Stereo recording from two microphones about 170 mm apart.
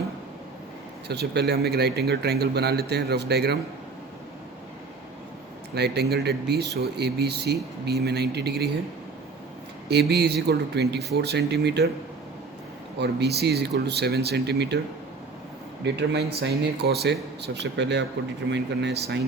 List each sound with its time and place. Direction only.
1.0 s speech: 75° right (ahead or behind)
5.7 s speech: 75° right (ahead or behind)
9.9 s speech: 80° right
13.0 s speech: 80° right
15.8 s speech: 90° right